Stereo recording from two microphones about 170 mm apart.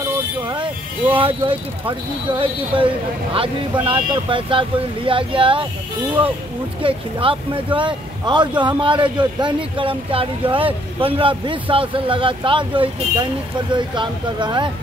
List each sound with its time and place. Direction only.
0.4 s vehicle: 30° right (ahead or behind)
1.1 s speech: 30° right (ahead or behind)
6.8 s speech: 30° right (ahead or behind)